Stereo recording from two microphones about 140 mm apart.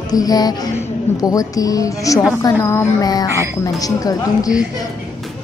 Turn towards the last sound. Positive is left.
turn(degrees=25)  # may be behind; listen again after turning